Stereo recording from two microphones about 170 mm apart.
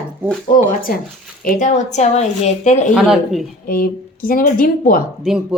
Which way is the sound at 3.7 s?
60° left (ahead or behind).